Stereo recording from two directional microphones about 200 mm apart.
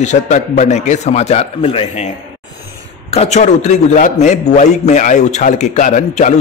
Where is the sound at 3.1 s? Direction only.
35° left (ahead or behind).